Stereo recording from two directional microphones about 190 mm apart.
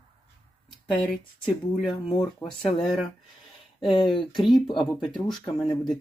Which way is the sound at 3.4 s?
Centre (ahead or behind).